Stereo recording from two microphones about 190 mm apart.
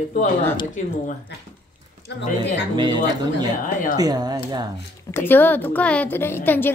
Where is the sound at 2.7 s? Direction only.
25° right (ahead or behind).